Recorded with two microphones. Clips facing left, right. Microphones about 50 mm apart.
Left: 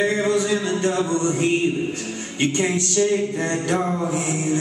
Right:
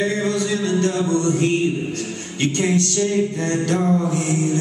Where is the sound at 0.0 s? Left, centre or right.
Centre.